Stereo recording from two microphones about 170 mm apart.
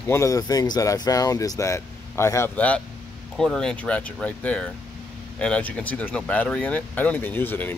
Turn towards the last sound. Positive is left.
turn(degrees=10)  # may be behind; listen again after turning